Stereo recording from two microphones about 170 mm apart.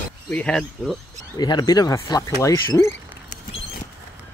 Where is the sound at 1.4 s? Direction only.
25° left (ahead or behind).